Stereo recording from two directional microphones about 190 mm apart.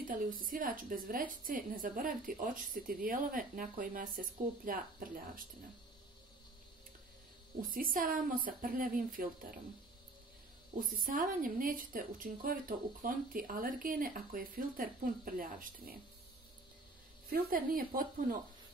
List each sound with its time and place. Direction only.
0.1 s a woman's voice: 45° right (ahead or behind)
7.7 s a woman's voice: 45° right (ahead or behind)
10.8 s a woman's voice: 45° right (ahead or behind)
17.3 s a woman's voice: 50° right (ahead or behind)